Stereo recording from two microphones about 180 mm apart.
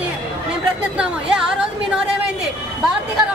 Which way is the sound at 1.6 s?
5° right (ahead or behind).